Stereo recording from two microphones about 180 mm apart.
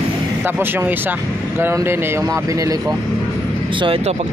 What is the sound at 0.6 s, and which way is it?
Speech, 10° right (ahead or behind).